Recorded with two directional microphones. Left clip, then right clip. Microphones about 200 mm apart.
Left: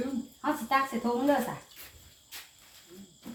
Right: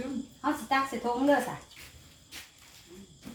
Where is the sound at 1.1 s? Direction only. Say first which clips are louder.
Even; 25° right (ahead or behind).